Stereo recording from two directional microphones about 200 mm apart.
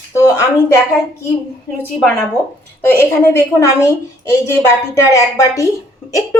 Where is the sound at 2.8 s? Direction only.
10° left (ahead or behind).